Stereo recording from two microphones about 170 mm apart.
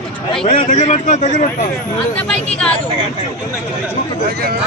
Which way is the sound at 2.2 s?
5° left (ahead or behind).